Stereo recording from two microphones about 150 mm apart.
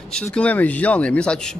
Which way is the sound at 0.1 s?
5° left (ahead or behind).